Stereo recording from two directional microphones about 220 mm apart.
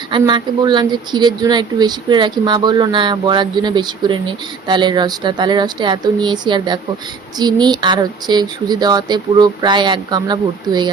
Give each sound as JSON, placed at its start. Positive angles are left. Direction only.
{"t": 0.1, "sound": "speech", "side_deg": -20}